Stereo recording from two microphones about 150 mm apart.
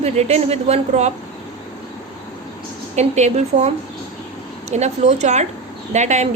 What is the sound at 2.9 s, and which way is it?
Speech, 50° right (ahead or behind).